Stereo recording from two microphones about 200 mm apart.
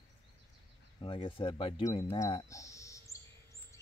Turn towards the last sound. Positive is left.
turn(degrees=15)  # may be behind; listen again after turning